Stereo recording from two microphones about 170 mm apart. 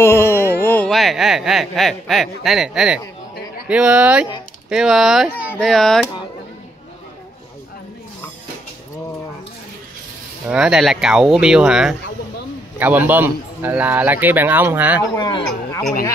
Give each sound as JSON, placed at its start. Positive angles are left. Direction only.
{"t": 0.0, "sound": "speech", "side_deg": 15}
{"t": 10.5, "sound": "speech", "side_deg": -5}
{"t": 15.1, "sound": "speech", "side_deg": 25}